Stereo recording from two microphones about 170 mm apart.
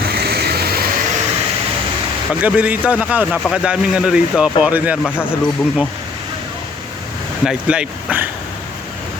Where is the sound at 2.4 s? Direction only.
10° right (ahead or behind).